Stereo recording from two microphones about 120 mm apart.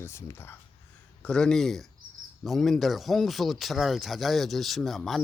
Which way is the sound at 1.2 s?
5° left (ahead or behind).